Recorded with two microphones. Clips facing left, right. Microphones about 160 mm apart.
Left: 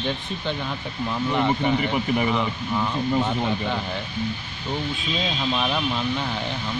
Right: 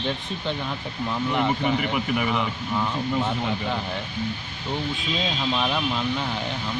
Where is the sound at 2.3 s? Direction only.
Centre (ahead or behind).